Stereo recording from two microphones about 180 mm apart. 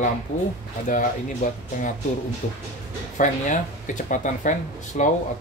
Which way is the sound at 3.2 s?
45° left (ahead or behind).